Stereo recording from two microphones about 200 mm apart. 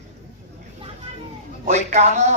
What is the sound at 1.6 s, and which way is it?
Speech, 35° right (ahead or behind).